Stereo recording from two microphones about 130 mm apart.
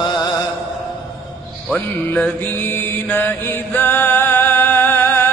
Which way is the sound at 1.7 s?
5° left (ahead or behind).